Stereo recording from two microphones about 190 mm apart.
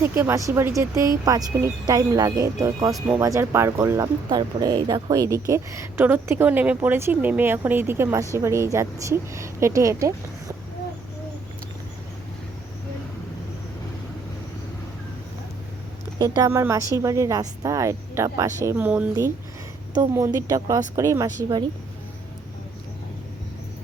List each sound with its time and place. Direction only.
0.0 s speech: 10° right (ahead or behind)
16.1 s speech: 20° right (ahead or behind)